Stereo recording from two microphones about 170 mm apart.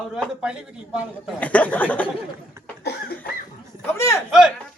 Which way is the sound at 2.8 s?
70° left (ahead or behind).